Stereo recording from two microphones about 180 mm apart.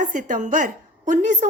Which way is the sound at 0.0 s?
45° right (ahead or behind).